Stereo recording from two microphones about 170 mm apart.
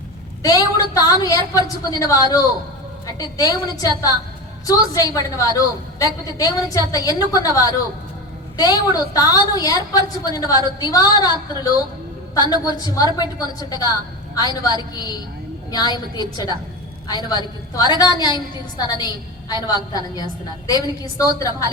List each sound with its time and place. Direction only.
0.4 s a woman's voice: 20° left (ahead or behind)